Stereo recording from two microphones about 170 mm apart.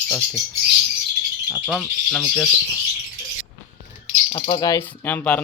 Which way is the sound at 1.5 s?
5° left (ahead or behind).